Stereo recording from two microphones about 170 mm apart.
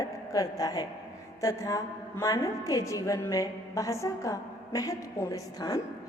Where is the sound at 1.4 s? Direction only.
20° left (ahead or behind).